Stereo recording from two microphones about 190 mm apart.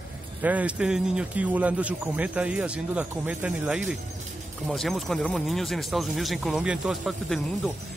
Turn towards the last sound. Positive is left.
turn(degrees=0)  # may be behind; listen again after turning